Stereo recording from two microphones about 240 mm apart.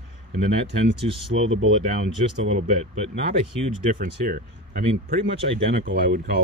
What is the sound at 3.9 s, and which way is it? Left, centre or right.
Speech, right.